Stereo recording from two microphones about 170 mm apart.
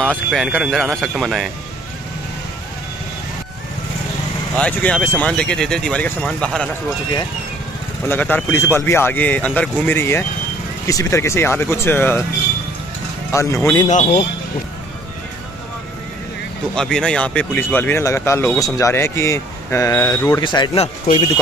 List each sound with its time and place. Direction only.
0.0 s speech: centre (ahead or behind)
4.6 s speech: 5° left (ahead or behind)
8.1 s speech: 10° left (ahead or behind)
13.3 s speech: 15° left (ahead or behind)
16.7 s speech: 5° left (ahead or behind); by 21.3 s 35° left (ahead or behind)